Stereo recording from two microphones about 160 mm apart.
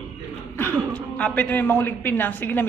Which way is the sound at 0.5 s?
10° left (ahead or behind).